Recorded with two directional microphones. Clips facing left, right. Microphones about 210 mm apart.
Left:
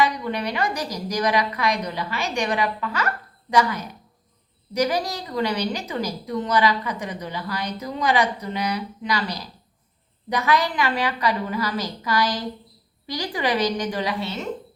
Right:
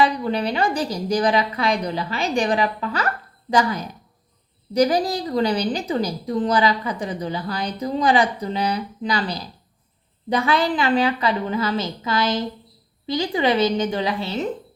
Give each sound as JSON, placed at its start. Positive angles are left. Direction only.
{"t": 0.0, "sound": "a woman's voice", "side_deg": -30}